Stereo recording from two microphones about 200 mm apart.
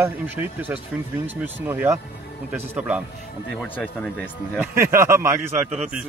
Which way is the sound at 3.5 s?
5° left (ahead or behind).